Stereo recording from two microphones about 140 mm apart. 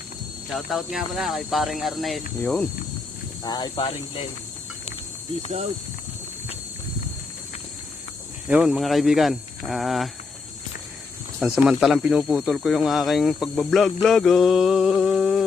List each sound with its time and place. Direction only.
0.5 s speech: centre (ahead or behind)
3.4 s speech: 30° left (ahead or behind)
8.4 s speech: 5° right (ahead or behind)
11.3 s speech: 5° right (ahead or behind)